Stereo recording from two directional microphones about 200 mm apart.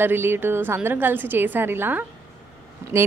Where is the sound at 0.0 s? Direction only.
10° right (ahead or behind).